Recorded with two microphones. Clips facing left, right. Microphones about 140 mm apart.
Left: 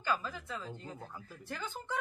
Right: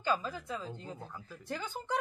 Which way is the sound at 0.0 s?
15° right (ahead or behind).